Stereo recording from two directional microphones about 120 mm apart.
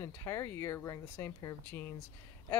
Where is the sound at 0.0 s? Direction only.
25° left (ahead or behind).